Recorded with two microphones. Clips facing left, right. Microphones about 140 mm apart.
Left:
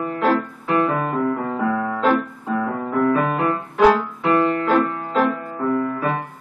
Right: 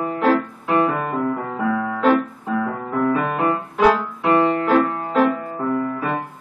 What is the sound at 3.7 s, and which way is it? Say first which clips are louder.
Music: left 3 dB; centre (ahead or behind).